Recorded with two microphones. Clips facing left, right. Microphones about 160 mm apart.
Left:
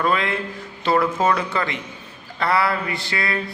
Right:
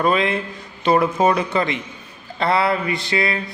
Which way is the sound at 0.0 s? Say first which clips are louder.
Right 3 dB; 20° right (ahead or behind).